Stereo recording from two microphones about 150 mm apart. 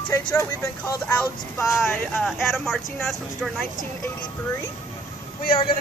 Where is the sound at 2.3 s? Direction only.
Centre (ahead or behind).